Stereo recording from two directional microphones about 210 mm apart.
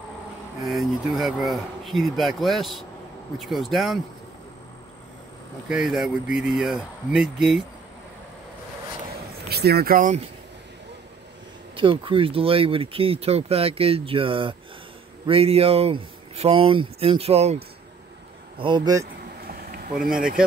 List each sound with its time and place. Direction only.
0.7 s speech: centre (ahead or behind)
5.7 s speech: centre (ahead or behind)
9.5 s speech: 50° right (ahead or behind)
11.7 s speech: 25° right (ahead or behind)
18.6 s speech: 20° right (ahead or behind)
19.4 s a sound: 45° right (ahead or behind)